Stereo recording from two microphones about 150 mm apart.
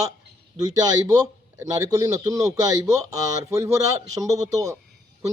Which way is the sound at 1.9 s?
25° right (ahead or behind).